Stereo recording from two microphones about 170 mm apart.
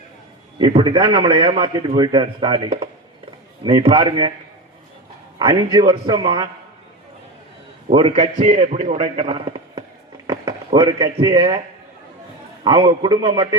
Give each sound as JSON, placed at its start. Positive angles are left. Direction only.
{"t": 0.6, "sound": "a man's voice", "side_deg": -30}
{"t": 5.4, "sound": "a man's voice", "side_deg": -25}
{"t": 7.9, "sound": "a man's voice", "side_deg": -35}
{"t": 12.6, "sound": "a man's voice", "side_deg": -25}